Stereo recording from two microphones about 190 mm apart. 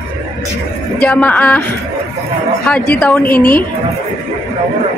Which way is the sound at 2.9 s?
5° left (ahead or behind).